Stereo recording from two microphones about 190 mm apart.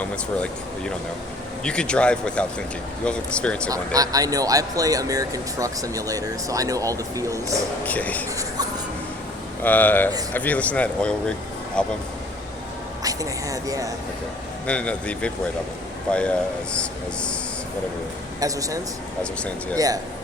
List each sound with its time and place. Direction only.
1.6 s speech: 5° left (ahead or behind)
3.7 s speech: 20° right (ahead or behind)
7.9 s speech: 10° left (ahead or behind)
9.6 s speech: 10° left (ahead or behind)
13.0 s a woman's voice: 20° right (ahead or behind)
14.7 s speech: 5° left (ahead or behind)
18.3 s speech: 20° right (ahead or behind)
19.2 s speech: 5° left (ahead or behind)
19.7 s speech: 20° right (ahead or behind)